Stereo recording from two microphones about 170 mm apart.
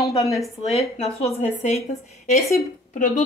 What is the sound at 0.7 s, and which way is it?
Speech, 40° left (ahead or behind).